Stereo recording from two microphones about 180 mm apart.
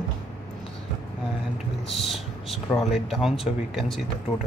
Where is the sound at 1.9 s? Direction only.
Centre (ahead or behind).